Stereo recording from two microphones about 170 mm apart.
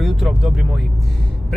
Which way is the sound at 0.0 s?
Centre (ahead or behind).